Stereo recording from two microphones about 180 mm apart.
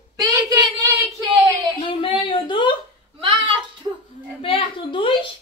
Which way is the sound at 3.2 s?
30° right (ahead or behind).